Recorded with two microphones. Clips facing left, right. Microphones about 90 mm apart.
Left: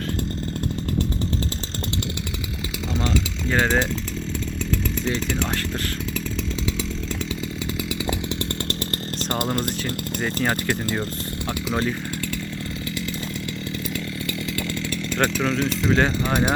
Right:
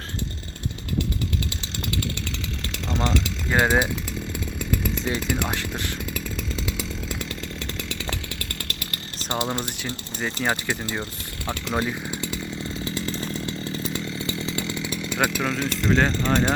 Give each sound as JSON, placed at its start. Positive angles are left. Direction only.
{"t": 2.9, "sound": "speech", "side_deg": 0}
{"t": 4.7, "sound": "chainsaw", "side_deg": -5}
{"t": 10.4, "sound": "speech", "side_deg": -5}
{"t": 14.3, "sound": "chainsaw", "side_deg": -20}